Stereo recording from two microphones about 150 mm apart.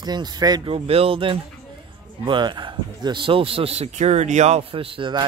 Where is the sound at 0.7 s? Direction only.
40° right (ahead or behind).